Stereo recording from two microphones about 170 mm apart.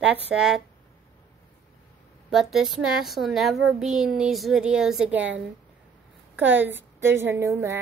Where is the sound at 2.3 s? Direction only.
Centre (ahead or behind).